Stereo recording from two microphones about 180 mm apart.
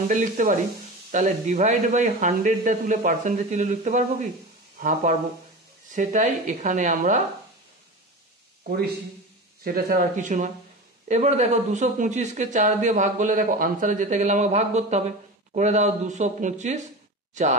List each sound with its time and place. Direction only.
0.1 s speech: 45° right (ahead or behind)
9.6 s speech: 55° right (ahead or behind)